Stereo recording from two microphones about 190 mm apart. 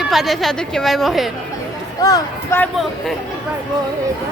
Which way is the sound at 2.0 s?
20° left (ahead or behind).